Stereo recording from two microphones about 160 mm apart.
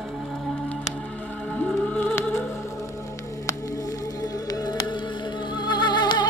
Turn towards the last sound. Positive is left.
turn(degrees=25)  # may be behind; listen again after turning